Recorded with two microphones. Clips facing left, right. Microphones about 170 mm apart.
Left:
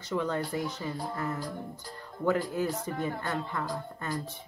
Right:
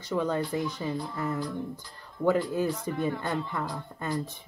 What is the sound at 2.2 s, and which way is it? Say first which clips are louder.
Speech: right 3 dB; 15° right (ahead or behind).